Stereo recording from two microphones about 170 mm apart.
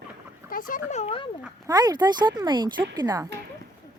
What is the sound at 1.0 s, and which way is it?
Speech, 35° left (ahead or behind).